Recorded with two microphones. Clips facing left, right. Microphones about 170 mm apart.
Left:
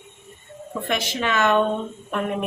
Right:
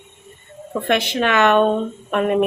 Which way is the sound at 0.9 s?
65° right (ahead or behind).